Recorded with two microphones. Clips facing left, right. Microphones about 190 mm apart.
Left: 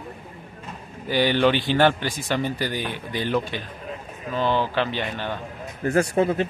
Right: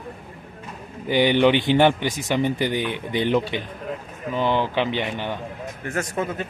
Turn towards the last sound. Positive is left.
turn(degrees=35)  # may be behind; listen again after turning